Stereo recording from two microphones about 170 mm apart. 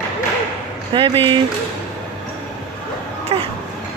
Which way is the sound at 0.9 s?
30° right (ahead or behind).